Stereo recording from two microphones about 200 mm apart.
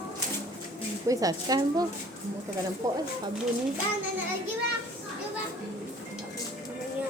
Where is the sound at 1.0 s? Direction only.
20° right (ahead or behind).